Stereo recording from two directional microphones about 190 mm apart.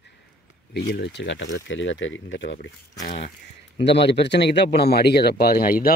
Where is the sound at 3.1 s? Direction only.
40° left (ahead or behind).